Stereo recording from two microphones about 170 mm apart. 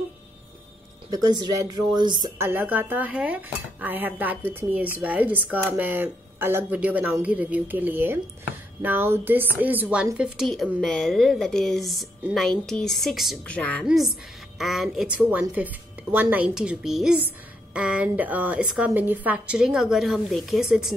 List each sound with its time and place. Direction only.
1.1 s a woman's voice: 25° right (ahead or behind)
2.3 s a woman's voice: 10° right (ahead or behind)